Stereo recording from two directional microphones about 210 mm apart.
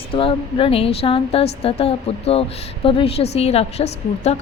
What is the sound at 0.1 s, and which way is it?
A woman's voice, 25° left (ahead or behind).